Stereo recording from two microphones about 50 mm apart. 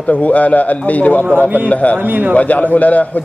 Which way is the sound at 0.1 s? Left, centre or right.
Left.